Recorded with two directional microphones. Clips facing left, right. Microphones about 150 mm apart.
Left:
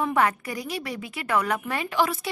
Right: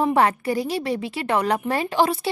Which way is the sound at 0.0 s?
30° right (ahead or behind).